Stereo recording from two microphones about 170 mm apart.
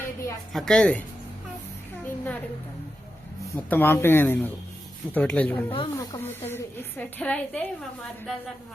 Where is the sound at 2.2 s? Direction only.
10° left (ahead or behind).